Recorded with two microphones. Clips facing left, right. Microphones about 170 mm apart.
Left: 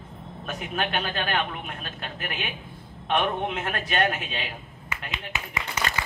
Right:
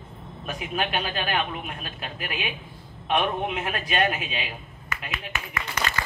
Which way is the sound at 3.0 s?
10° right (ahead or behind).